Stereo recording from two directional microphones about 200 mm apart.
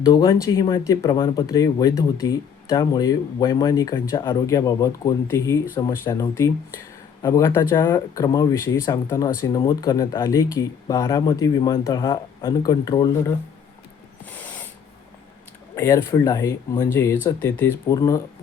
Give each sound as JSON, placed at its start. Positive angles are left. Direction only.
{"t": 0.0, "sound": "speech", "side_deg": 20}
{"t": 15.7, "sound": "speech", "side_deg": 15}